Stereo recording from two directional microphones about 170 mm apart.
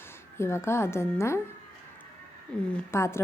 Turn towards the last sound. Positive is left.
turn(degrees=15)  # may be behind; listen again after turning